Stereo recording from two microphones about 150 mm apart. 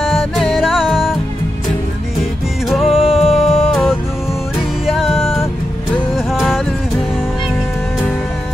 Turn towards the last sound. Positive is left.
turn(degrees=0)  # may be behind; listen again after turning